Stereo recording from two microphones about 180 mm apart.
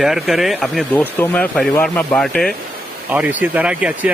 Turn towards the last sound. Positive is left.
turn(degrees=-5)  # may be behind; listen again after turning